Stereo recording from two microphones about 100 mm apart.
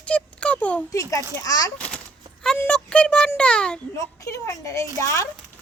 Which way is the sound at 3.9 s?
30° left (ahead or behind).